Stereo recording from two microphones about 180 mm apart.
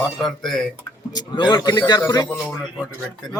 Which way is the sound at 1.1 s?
25° left (ahead or behind).